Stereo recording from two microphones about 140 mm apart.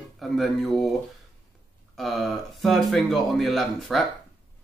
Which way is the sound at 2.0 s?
Centre (ahead or behind).